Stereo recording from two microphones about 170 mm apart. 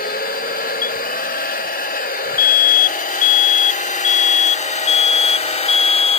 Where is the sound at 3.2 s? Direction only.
50° left (ahead or behind).